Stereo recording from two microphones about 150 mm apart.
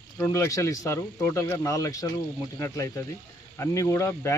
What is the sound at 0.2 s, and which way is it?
Speech, 20° left (ahead or behind).